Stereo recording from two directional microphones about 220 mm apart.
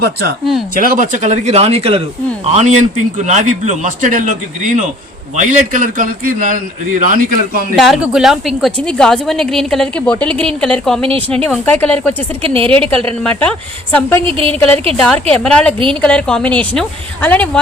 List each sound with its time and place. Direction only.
0.0 s a man's voice: 45° right (ahead or behind)
7.8 s a woman's voice: centre (ahead or behind)
12.4 s a woman's voice: 25° right (ahead or behind)
13.1 s a woman's voice: 5° left (ahead or behind)
14.2 s a woman's voice: 25° right (ahead or behind)
14.9 s a woman's voice: 5° left (ahead or behind)